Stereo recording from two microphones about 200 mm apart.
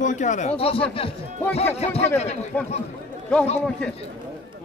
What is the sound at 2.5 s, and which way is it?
Speech, 10° left (ahead or behind).